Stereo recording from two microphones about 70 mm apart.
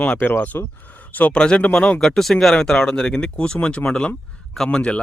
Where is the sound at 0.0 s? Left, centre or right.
Left.